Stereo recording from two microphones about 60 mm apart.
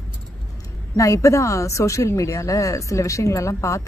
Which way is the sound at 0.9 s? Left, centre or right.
Left.